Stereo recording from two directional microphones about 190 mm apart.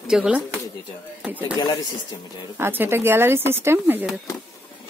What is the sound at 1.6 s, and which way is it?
Speech, 20° left (ahead or behind).